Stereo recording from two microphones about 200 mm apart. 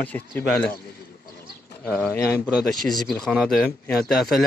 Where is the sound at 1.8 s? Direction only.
5° left (ahead or behind).